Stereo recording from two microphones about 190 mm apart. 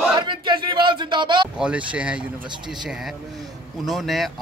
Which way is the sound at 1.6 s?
5° right (ahead or behind).